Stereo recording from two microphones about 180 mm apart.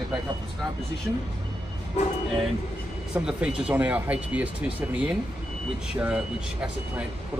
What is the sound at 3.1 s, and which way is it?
Speech, 5° right (ahead or behind).